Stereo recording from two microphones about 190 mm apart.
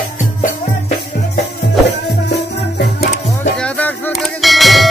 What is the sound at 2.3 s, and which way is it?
Music, 55° left (ahead or behind).